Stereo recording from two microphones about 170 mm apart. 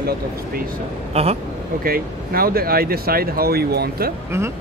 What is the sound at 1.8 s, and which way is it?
Speech, 60° right (ahead or behind).